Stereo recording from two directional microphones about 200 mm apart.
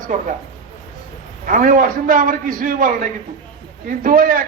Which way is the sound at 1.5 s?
45° right (ahead or behind).